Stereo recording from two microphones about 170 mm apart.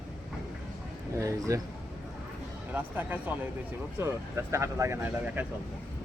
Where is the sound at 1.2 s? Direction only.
20° right (ahead or behind).